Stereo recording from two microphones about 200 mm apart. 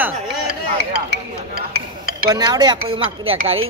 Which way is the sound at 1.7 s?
50° right (ahead or behind).